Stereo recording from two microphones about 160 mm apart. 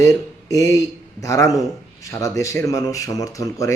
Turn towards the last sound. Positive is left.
turn(degrees=20)  # may be behind; listen again after turning